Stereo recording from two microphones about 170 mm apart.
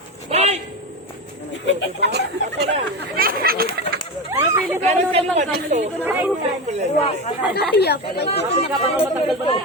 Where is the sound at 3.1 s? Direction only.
60° right (ahead or behind).